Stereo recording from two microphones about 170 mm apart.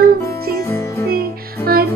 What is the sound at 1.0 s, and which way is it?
Music, 65° right (ahead or behind).